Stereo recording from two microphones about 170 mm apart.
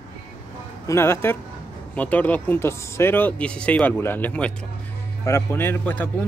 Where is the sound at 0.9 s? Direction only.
15° left (ahead or behind).